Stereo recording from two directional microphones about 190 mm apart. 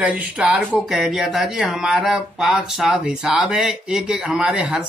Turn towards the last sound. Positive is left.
turn(degrees=-5)  # may be behind; listen again after turning